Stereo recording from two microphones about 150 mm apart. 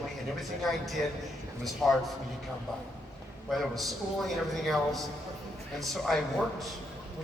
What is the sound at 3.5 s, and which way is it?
A man's voice, centre (ahead or behind).